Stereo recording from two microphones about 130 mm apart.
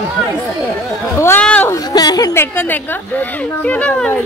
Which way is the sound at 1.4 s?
10° left (ahead or behind).